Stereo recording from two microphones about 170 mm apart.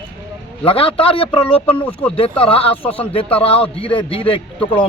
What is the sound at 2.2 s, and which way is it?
A man's voice, 35° left (ahead or behind).